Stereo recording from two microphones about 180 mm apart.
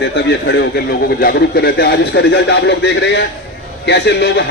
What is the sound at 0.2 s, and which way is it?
Speech, 70° left (ahead or behind).